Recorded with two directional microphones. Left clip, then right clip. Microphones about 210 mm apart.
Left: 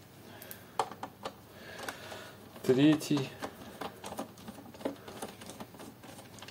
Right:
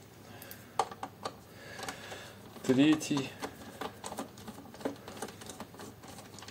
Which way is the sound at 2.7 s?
30° left (ahead or behind).